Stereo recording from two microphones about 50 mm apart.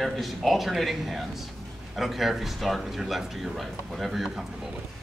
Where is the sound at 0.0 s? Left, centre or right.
Centre.